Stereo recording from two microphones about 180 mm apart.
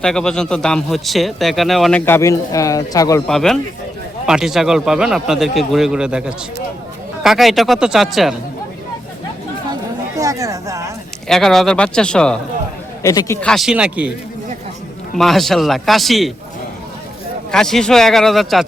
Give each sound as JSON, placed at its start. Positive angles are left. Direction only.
{"t": 0.0, "sound": "a man's voice", "side_deg": 5}
{"t": 3.2, "sound": "a man's voice", "side_deg": 5}
{"t": 10.2, "sound": "speech", "side_deg": -20}
{"t": 11.3, "sound": "a man's voice", "side_deg": 0}
{"t": 13.0, "sound": "a man's voice", "side_deg": 15}
{"t": 13.4, "sound": "a man's voice", "side_deg": 0}
{"t": 15.1, "sound": "a man's voice", "side_deg": 0}
{"t": 17.5, "sound": "a man's voice", "side_deg": 5}